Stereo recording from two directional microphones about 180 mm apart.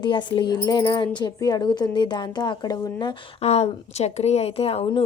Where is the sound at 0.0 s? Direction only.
25° left (ahead or behind).